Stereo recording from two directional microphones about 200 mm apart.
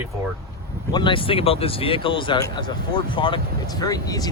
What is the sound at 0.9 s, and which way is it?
Speech, 25° left (ahead or behind).